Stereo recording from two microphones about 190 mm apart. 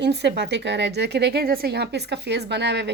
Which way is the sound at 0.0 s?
60° right (ahead or behind).